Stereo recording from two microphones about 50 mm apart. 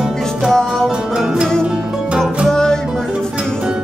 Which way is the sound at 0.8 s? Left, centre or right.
Centre.